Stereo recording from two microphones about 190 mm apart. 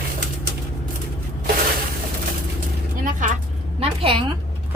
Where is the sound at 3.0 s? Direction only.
40° right (ahead or behind).